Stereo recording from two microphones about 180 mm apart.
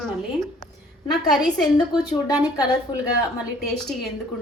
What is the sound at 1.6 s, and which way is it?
A woman's voice, 20° left (ahead or behind).